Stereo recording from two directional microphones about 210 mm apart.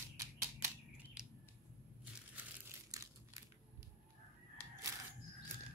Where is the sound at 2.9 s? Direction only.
15° right (ahead or behind).